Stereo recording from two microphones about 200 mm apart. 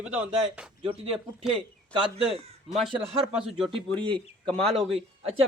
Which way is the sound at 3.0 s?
5° right (ahead or behind).